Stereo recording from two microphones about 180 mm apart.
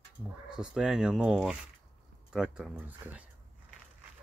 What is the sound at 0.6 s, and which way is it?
Speech, 5° right (ahead or behind).